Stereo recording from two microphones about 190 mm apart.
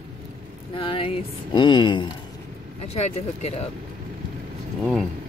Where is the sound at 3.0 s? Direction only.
35° left (ahead or behind).